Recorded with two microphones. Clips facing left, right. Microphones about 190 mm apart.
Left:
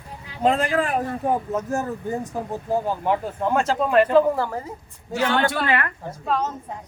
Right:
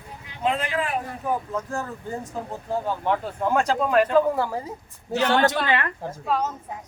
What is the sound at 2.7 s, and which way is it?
Speech, 10° left (ahead or behind).